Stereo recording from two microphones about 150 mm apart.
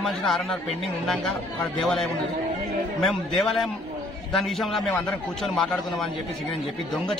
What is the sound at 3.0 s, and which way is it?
A man's voice, centre (ahead or behind).